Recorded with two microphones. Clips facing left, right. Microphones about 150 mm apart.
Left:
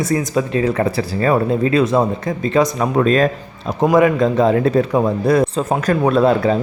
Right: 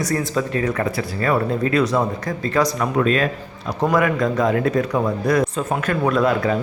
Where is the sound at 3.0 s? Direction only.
35° left (ahead or behind).